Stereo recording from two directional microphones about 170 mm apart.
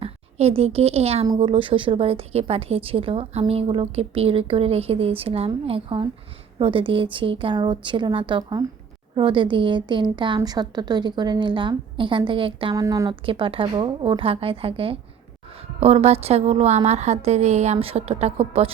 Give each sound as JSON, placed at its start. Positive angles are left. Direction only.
{"t": 0.0, "sound": "a child's voice", "side_deg": -35}
{"t": 12.7, "sound": "a woman's voice", "side_deg": -20}